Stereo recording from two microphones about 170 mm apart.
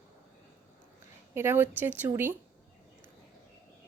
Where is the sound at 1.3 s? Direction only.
15° right (ahead or behind).